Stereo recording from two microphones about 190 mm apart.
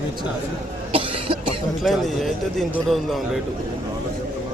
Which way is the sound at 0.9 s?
30° right (ahead or behind).